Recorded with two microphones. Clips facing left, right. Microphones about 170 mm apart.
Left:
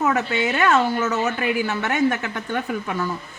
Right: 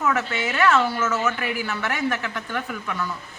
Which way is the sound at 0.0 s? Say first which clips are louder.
Left 3 dB; 35° left (ahead or behind).